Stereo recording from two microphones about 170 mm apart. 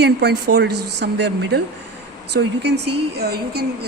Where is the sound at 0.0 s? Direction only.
80° right.